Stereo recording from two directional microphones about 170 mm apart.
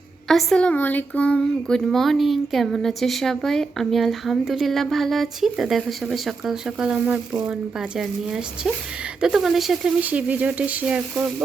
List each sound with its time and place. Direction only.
0.3 s speech: centre (ahead or behind)